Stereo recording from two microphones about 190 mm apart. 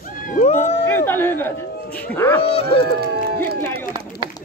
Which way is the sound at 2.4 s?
30° left (ahead or behind).